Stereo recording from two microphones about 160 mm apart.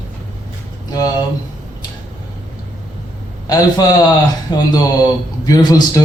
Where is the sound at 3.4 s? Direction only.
20° left (ahead or behind).